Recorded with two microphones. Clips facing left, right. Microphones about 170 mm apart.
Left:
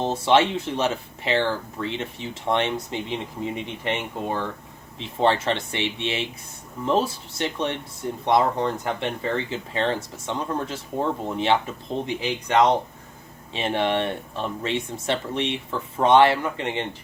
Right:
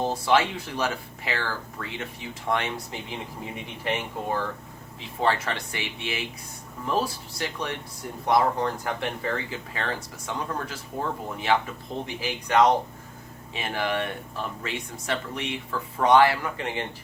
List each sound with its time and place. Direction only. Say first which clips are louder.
0.0 s speech: left 3 dB; 25° left (ahead or behind)